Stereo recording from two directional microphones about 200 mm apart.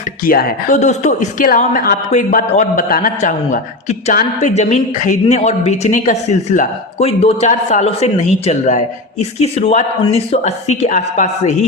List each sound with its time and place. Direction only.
0.2 s a woman's voice: 45° left (ahead or behind)